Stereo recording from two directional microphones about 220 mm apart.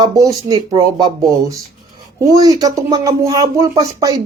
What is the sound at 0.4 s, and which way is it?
Speech, 20° right (ahead or behind).